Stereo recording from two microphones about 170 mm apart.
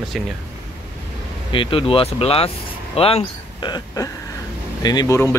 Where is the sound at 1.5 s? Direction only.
30° left (ahead or behind).